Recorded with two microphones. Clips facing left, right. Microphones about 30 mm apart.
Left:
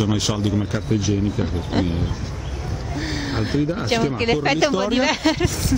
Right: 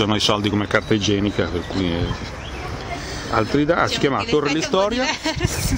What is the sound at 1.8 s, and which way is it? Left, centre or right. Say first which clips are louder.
Speech: right 2 dB; right.